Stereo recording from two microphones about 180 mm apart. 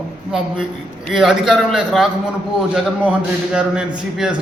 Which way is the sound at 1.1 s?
Centre (ahead or behind).